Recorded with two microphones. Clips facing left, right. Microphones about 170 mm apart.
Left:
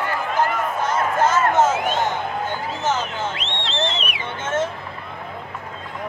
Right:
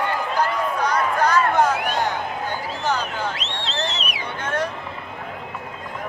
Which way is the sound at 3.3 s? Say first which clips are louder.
Left 2 dB; 40° right (ahead or behind).